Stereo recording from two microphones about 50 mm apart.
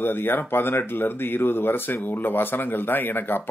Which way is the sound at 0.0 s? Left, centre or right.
Left.